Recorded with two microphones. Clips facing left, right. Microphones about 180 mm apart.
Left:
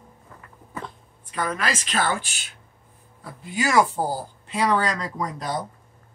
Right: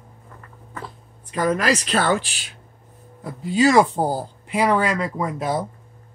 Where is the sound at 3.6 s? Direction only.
30° right (ahead or behind).